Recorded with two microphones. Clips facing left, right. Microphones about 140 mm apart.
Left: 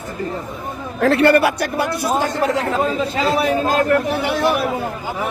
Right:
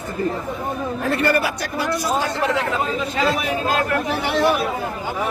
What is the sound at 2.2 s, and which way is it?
Speech, 40° left (ahead or behind).